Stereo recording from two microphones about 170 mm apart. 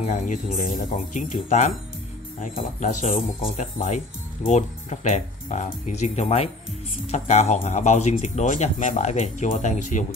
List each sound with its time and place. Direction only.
0.0 s speech: 45° left (ahead or behind)
2.8 s speech: 45° left (ahead or behind)
3.3 s speech: 35° left (ahead or behind)
3.7 s speech: 50° left (ahead or behind)